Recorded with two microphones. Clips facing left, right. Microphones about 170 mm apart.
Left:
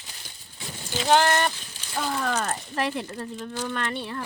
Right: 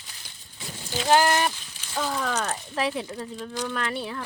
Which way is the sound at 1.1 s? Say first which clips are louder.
Even; 5° right (ahead or behind).